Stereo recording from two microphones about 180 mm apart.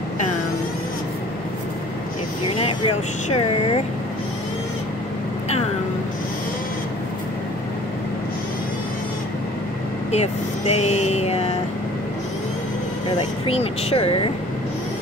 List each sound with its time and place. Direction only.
2.6 s speech: 30° left (ahead or behind)
10.1 s speech: 35° left (ahead or behind)
13.5 s speech: 35° left (ahead or behind)